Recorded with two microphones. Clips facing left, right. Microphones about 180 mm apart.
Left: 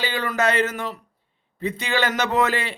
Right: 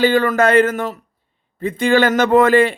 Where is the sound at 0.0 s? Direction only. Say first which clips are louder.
Right 9 dB; 50° right (ahead or behind).